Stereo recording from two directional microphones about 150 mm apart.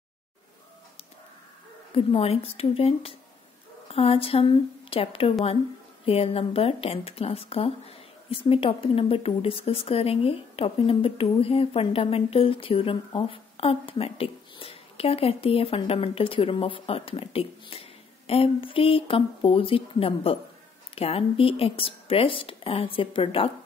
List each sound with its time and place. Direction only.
2.0 s speech: 40° left (ahead or behind)